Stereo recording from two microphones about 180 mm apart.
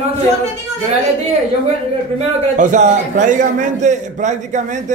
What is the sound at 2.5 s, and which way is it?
A man's voice, 45° right (ahead or behind).